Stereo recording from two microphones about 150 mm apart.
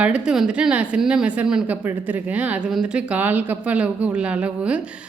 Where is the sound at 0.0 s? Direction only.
5° right (ahead or behind).